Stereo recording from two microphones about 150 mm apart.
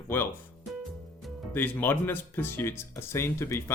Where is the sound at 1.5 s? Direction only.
15° left (ahead or behind).